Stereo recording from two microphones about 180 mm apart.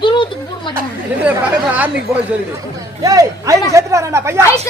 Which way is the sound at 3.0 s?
20° right (ahead or behind).